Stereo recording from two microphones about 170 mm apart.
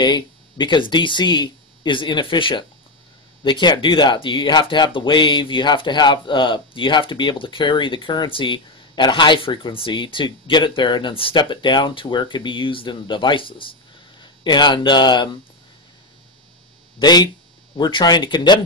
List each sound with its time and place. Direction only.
0.0 s speech: 25° left (ahead or behind)
17.0 s speech: 25° left (ahead or behind)